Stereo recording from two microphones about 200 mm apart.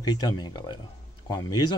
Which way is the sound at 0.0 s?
20° left (ahead or behind).